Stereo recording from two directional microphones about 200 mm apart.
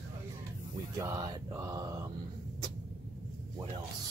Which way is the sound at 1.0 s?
15° right (ahead or behind).